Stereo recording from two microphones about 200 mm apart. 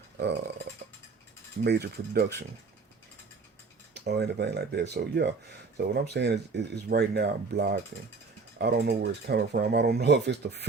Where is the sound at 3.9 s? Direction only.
55° right (ahead or behind).